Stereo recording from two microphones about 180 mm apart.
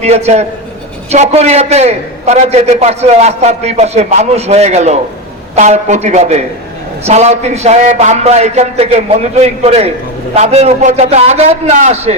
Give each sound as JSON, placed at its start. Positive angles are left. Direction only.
{"t": 0.0, "sound": "a man's voice", "side_deg": -35}